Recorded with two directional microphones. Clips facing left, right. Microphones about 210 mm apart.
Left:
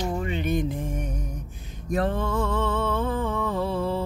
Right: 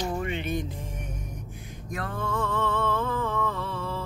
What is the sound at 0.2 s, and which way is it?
Music, 35° left (ahead or behind).